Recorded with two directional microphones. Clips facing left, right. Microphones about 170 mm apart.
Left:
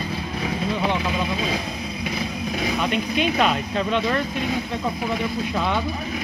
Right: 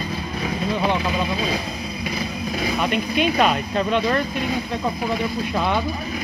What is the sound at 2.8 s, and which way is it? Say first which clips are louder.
Speech: right 2 dB; 50° right (ahead or behind).